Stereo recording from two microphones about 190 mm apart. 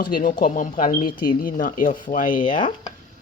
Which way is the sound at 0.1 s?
45° left (ahead or behind).